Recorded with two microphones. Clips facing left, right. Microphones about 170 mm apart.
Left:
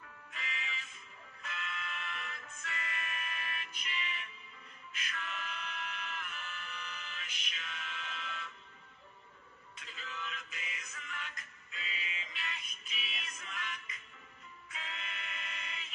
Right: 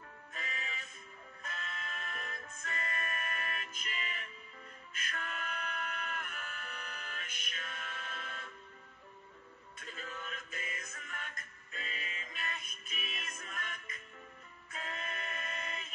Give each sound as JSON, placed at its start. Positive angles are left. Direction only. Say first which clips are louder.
{"t": 0.3, "sound": "music", "louder": "even", "side_deg": -45}
{"t": 9.8, "sound": "music", "louder": "right 1 dB", "side_deg": -50}